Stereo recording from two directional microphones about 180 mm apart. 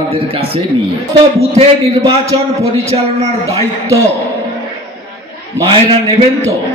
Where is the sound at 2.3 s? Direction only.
25° right (ahead or behind).